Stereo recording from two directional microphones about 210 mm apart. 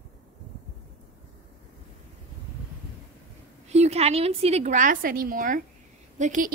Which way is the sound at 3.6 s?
30° right (ahead or behind).